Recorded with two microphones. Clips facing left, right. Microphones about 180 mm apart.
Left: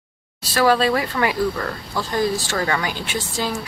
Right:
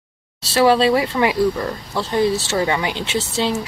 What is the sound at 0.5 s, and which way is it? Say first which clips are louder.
Speech: right 3 dB; 25° right (ahead or behind).